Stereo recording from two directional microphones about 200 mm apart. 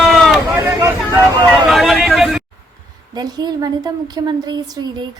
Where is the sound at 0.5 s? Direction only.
15° right (ahead or behind).